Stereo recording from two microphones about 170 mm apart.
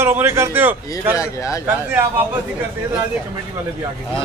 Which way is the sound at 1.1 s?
20° left (ahead or behind).